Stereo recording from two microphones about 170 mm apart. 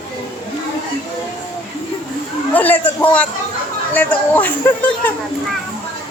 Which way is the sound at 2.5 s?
10° left (ahead or behind).